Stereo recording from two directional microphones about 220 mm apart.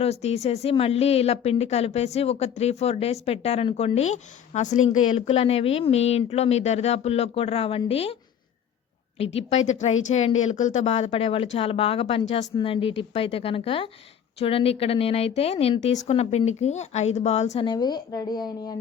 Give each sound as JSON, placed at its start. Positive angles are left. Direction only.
{"t": 0.0, "sound": "a woman's voice", "side_deg": 30}
{"t": 9.1, "sound": "a woman's voice", "side_deg": 25}
{"t": 17.7, "sound": "a woman's voice", "side_deg": 20}